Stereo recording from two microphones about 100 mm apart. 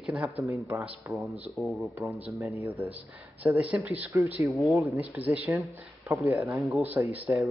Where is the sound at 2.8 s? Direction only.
20° right (ahead or behind).